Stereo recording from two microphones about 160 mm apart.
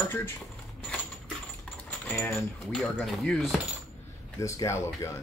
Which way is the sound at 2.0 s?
10° left (ahead or behind).